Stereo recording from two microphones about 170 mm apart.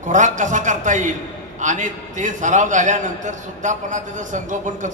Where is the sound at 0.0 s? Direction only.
45° right (ahead or behind).